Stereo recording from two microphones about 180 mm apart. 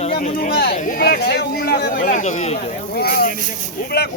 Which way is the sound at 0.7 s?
45° left (ahead or behind).